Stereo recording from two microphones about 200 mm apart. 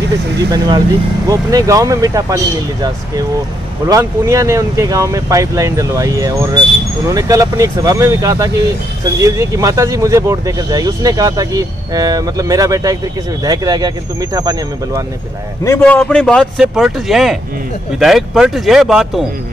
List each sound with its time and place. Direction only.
0.5 s speech: 20° right (ahead or behind)
3.9 s speech: 15° right (ahead or behind)
15.8 s speech: 5° left (ahead or behind)